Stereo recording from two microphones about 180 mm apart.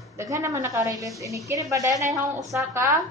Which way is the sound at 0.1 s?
15° right (ahead or behind).